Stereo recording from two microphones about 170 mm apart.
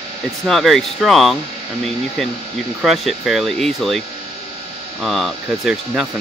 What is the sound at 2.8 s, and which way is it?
Speech, centre (ahead or behind).